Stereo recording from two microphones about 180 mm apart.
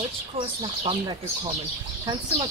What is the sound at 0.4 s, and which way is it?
Speech, 25° right (ahead or behind).